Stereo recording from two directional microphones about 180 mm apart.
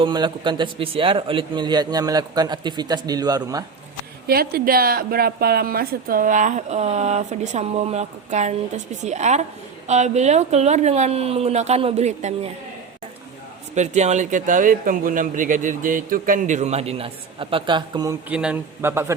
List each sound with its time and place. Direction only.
0.0 s a man's voice: 25° right (ahead or behind)
4.3 s a woman's voice: 55° right (ahead or behind); by 12.5 s 40° right (ahead or behind)
13.7 s speech: 40° right (ahead or behind); by 18.2 s 20° right (ahead or behind)
18.3 s a man's voice: 5° right (ahead or behind)